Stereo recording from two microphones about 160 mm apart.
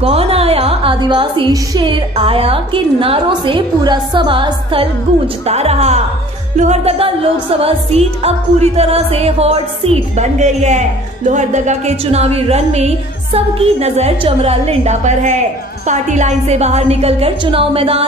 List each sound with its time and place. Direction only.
0.0 s music: 40° right (ahead or behind)